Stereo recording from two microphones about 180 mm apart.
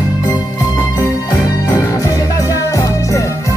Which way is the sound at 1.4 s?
20° left (ahead or behind).